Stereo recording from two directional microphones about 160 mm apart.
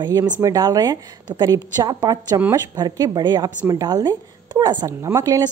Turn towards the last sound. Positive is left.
turn(degrees=-20)  # may be behind; listen again after turning